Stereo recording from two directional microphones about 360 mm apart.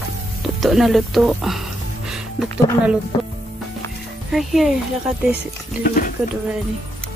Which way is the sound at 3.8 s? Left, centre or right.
Centre.